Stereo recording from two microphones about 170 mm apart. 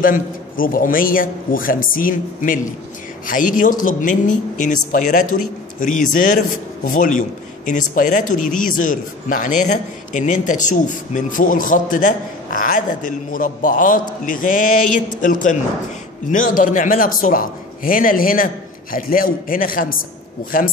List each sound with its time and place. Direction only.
0.0 s a man's voice: 55° left (ahead or behind)